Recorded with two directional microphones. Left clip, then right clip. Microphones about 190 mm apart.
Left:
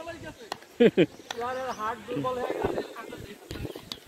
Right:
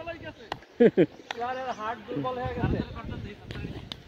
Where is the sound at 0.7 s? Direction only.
10° left (ahead or behind).